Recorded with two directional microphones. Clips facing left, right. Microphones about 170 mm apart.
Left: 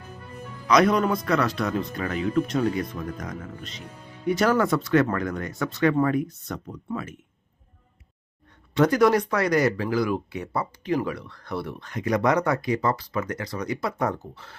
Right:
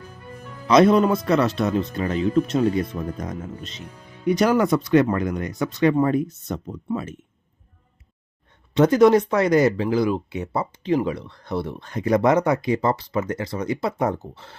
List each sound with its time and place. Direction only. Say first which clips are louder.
0.7 s speech: right 5 dB; 25° right (ahead or behind)
8.7 s speech: right 4 dB; 20° right (ahead or behind)